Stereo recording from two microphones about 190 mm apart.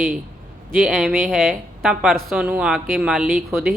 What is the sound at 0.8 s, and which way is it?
Speech, centre (ahead or behind).